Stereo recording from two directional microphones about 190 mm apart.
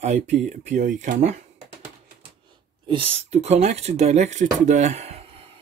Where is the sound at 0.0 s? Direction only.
35° right (ahead or behind).